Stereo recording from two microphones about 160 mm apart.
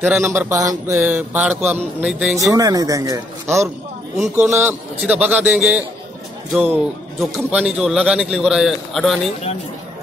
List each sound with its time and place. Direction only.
0.2 s mantra: 15° right (ahead or behind)
2.0 s a man's voice: 5° right (ahead or behind)
2.5 s speech: 20° right (ahead or behind)
4.4 s mantra: 15° right (ahead or behind)
6.5 s a man's voice: 5° right (ahead or behind)